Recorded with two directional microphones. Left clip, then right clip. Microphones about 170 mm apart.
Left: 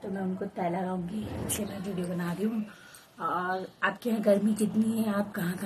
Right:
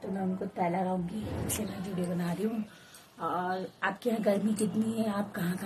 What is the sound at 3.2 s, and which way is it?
Speech, 20° left (ahead or behind).